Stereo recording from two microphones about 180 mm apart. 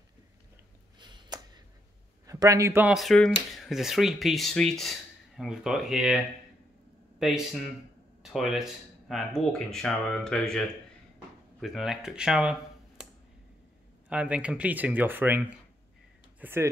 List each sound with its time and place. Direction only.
0.9 s a sound: 25° right (ahead or behind)
2.2 s speech: 20° right (ahead or behind)
14.0 s speech: 5° right (ahead or behind)